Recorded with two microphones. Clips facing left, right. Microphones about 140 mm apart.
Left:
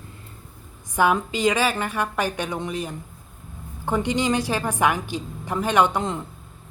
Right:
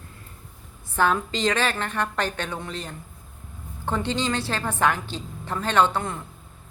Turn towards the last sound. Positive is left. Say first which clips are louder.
# left 2 dB
turn(degrees=15)  # may be behind; listen again after turning